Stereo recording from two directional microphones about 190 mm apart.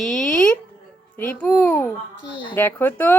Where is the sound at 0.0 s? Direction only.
5° left (ahead or behind).